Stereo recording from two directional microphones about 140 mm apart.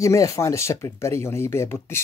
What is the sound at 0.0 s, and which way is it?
Speech, 25° left (ahead or behind).